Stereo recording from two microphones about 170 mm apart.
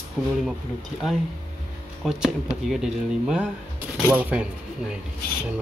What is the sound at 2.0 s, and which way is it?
Speech, 5° right (ahead or behind).